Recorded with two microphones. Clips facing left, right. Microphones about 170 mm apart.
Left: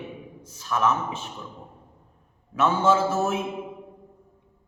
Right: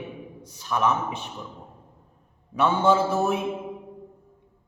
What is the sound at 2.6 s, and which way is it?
Speech, 15° right (ahead or behind).